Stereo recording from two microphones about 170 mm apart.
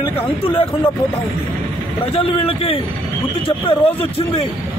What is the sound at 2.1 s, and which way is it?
A man's voice, 35° left (ahead or behind).